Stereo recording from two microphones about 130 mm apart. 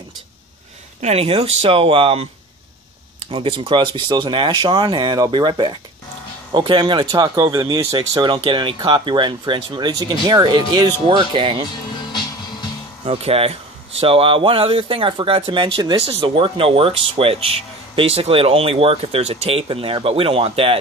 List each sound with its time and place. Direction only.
1.0 s speech: 50° right (ahead or behind)
3.3 s speech: 40° right (ahead or behind)
12.1 s music: 35° left (ahead or behind)
13.0 s speech: 50° right (ahead or behind)